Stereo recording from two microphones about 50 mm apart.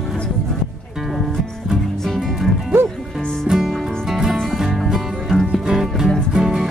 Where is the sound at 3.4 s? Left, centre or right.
Centre.